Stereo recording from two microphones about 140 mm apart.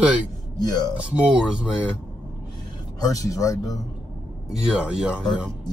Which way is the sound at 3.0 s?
25° left (ahead or behind).